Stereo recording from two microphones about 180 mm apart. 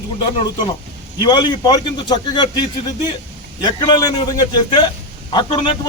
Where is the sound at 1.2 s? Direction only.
25° left (ahead or behind).